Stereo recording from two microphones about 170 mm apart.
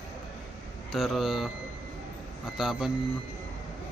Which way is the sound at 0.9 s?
Centre (ahead or behind).